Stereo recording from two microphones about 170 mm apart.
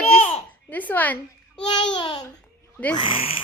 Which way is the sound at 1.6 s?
25° left (ahead or behind).